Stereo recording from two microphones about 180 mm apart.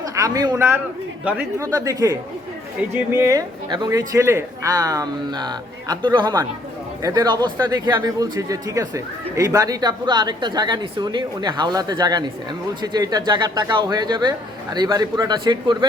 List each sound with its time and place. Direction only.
0.2 s speech: 20° right (ahead or behind)